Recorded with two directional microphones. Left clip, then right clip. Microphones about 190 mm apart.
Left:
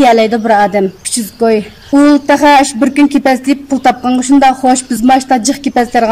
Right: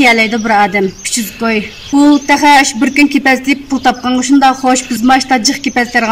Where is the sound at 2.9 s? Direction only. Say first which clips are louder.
Right 1 dB; 30° left (ahead or behind).